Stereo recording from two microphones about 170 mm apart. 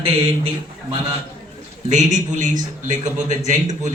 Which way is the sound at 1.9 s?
45° right (ahead or behind).